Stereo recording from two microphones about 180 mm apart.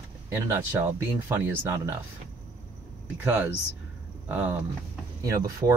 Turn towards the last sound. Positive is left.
turn(degrees=-20)  # may be behind; listen again after turning